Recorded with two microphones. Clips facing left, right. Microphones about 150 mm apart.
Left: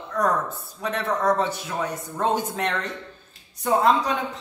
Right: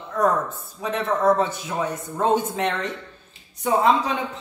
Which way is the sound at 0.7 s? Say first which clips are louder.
Right 2 dB; 5° right (ahead or behind).